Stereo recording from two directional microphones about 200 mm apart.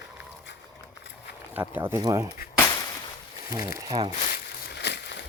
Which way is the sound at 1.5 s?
10° right (ahead or behind).